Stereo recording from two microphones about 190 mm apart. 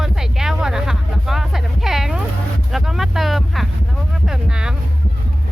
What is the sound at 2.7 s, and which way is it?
Vehicle, centre (ahead or behind).